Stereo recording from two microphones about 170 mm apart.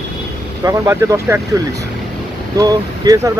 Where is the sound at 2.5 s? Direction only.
20° right (ahead or behind).